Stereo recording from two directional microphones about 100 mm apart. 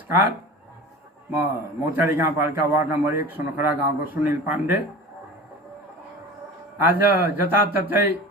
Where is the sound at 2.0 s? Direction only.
20° right (ahead or behind).